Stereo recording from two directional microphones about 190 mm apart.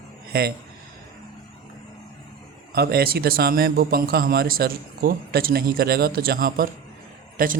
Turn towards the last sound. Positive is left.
turn(degrees=-45)  # may be behind; listen again after turning